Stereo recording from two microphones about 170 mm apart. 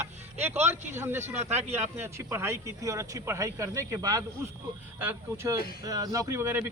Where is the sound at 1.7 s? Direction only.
15° right (ahead or behind).